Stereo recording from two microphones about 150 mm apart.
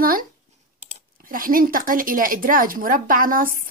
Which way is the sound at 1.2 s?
70° right (ahead or behind).